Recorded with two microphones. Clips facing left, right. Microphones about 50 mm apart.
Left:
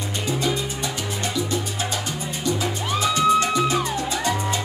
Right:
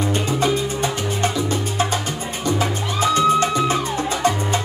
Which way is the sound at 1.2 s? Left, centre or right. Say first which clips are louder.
Right 3 dB; right.